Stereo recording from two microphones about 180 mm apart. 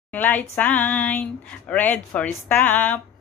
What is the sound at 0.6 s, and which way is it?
Speech, 10° left (ahead or behind).